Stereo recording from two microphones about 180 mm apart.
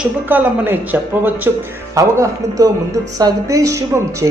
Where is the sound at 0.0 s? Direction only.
10° right (ahead or behind).